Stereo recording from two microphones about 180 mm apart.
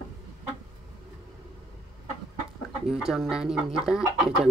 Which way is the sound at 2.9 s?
Centre (ahead or behind).